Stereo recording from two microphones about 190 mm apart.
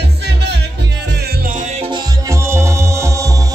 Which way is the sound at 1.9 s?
20° right (ahead or behind).